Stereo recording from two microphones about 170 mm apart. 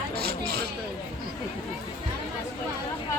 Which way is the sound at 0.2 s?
70° right (ahead or behind).